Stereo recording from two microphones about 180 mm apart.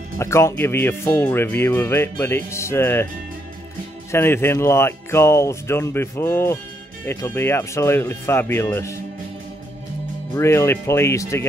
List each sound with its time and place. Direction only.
0.2 s speech: 15° left (ahead or behind)
4.1 s speech: 15° left (ahead or behind)
10.3 s speech: 15° left (ahead or behind)